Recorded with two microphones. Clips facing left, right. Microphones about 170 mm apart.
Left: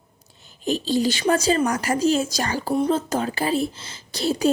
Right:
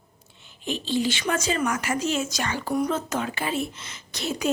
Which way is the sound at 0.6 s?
40° left (ahead or behind).